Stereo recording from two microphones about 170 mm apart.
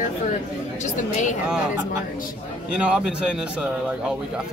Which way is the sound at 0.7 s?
45° left (ahead or behind).